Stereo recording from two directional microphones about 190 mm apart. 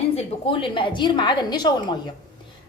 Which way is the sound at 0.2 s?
25° left (ahead or behind).